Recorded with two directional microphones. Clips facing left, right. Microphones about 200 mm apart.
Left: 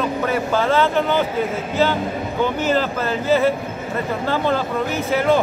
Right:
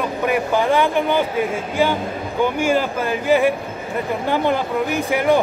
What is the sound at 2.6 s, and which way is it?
Speech, 10° right (ahead or behind).